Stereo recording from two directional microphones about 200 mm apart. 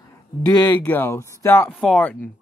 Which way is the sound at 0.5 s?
20° left (ahead or behind).